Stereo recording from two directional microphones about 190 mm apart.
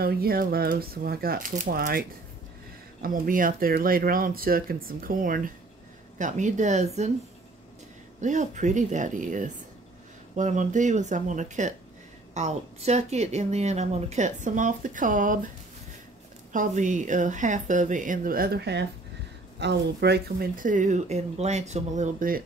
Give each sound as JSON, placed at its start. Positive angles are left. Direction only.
{"t": 0.0, "sound": "speech", "side_deg": -55}
{"t": 8.2, "sound": "speech", "side_deg": -40}
{"t": 16.5, "sound": "speech", "side_deg": -40}